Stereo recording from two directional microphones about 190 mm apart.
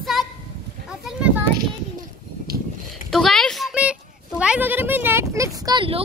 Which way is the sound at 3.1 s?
Centre (ahead or behind).